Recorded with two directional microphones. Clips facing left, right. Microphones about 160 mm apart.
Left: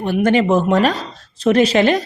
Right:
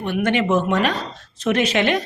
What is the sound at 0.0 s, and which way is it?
A woman's voice, 35° left (ahead or behind).